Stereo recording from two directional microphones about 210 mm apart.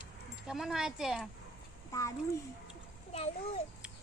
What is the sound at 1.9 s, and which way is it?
Speech, 15° left (ahead or behind).